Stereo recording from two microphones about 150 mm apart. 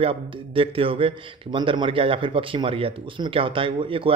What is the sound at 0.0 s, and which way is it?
A man's voice, 40° right (ahead or behind).